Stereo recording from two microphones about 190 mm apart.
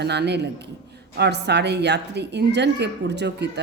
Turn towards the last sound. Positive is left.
turn(degrees=-60)  # may be behind; listen again after turning